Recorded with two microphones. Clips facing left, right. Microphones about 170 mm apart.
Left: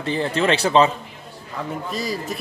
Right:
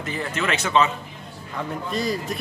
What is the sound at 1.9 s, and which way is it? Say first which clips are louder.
Speech: right 3 dB; centre (ahead or behind).